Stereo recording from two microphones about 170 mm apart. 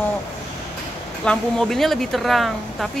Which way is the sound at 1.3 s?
5° left (ahead or behind).